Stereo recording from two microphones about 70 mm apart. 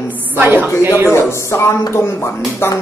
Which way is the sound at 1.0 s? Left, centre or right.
Left.